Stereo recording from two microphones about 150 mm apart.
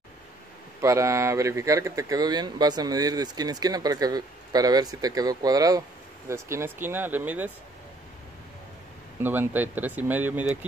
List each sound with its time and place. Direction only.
0.7 s speech: 20° right (ahead or behind)
9.2 s speech: 15° right (ahead or behind)